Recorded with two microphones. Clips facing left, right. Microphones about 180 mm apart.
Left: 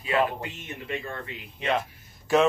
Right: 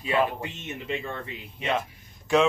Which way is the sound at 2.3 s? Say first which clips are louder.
Even; centre (ahead or behind).